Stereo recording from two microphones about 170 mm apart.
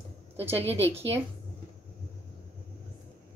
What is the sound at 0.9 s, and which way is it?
Speech, 35° right (ahead or behind).